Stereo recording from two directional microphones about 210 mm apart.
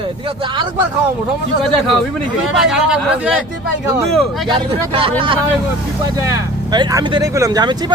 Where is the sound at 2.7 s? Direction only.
5° right (ahead or behind).